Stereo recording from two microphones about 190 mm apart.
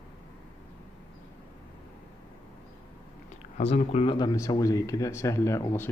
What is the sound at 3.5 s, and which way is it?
Speech, 35° left (ahead or behind).